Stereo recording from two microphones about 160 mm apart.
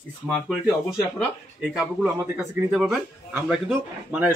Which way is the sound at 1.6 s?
10° right (ahead or behind).